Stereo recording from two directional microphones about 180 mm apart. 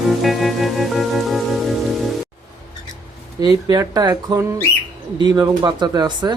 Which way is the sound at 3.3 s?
20° right (ahead or behind).